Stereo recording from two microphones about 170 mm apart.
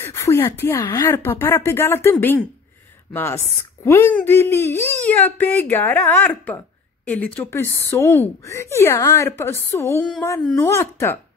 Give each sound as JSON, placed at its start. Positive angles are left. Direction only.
{"t": 0.0, "sound": "a woman's voice", "side_deg": 15}